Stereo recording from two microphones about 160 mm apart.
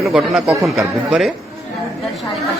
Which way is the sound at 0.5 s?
20° right (ahead or behind).